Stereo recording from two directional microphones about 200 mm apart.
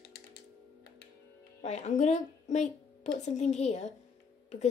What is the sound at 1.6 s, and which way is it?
A woman's voice, 35° left (ahead or behind).